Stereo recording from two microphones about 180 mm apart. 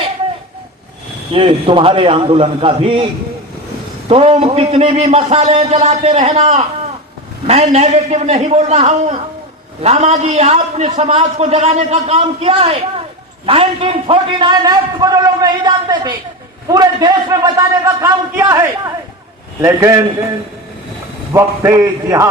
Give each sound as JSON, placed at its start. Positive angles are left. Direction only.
{"t": 1.3, "sound": "a man's voice", "side_deg": -30}
{"t": 4.1, "sound": "a man's voice", "side_deg": -30}
{"t": 21.3, "sound": "a man's voice", "side_deg": -15}